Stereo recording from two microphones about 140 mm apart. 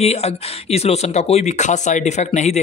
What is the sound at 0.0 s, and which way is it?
Speech, 50° left (ahead or behind).